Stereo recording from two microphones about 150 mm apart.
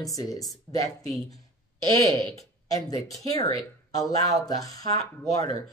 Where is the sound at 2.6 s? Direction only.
25° left (ahead or behind).